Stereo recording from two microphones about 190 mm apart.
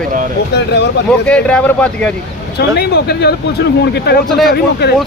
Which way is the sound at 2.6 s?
60° left (ahead or behind).